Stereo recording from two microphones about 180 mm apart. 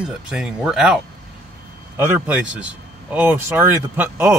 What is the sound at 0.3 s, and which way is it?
Speech, 5° right (ahead or behind).